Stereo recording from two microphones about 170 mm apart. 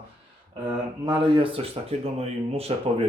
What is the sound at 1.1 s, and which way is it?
Speech, 30° right (ahead or behind).